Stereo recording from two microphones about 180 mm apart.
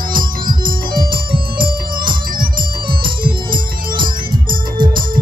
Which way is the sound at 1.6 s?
25° right (ahead or behind).